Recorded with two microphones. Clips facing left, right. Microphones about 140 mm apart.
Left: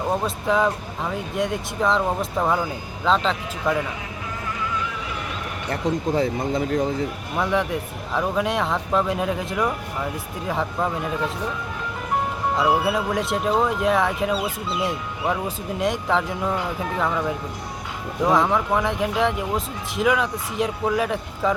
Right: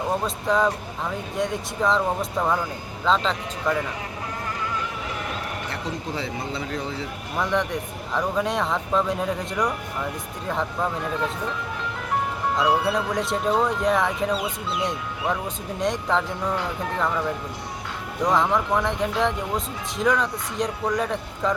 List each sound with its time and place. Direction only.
0.3 s speech: 5° left (ahead or behind)
5.7 s speech: 45° left (ahead or behind)
7.3 s speech: 5° left (ahead or behind)
12.5 s speech: 5° left (ahead or behind)